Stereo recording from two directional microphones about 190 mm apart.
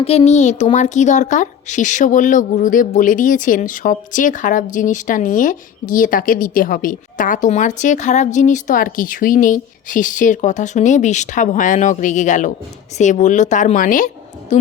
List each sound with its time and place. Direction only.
0.0 s a woman's voice: 30° left (ahead or behind)